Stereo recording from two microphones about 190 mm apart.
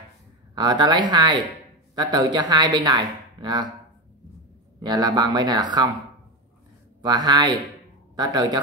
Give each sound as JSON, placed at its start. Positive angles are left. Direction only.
{"t": 0.6, "sound": "speech", "side_deg": -25}
{"t": 4.8, "sound": "speech", "side_deg": -20}
{"t": 7.0, "sound": "speech", "side_deg": -20}